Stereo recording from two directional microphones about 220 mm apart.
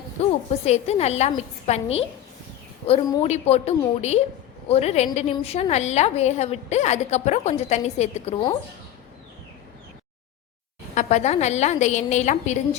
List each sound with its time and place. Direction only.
0.2 s a woman's voice: 30° left (ahead or behind)
10.9 s a woman's voice: 30° left (ahead or behind)